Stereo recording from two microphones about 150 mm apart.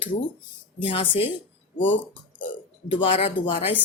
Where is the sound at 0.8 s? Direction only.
35° left (ahead or behind).